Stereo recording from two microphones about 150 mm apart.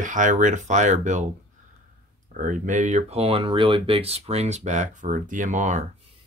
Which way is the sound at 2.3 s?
60° right (ahead or behind).